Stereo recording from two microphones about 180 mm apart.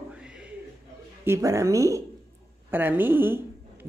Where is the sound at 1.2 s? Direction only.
15° right (ahead or behind).